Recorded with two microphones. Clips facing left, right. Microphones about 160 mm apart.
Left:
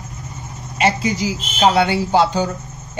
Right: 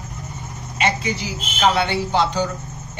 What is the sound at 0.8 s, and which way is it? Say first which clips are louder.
Speech: left 4 dB; 35° left (ahead or behind).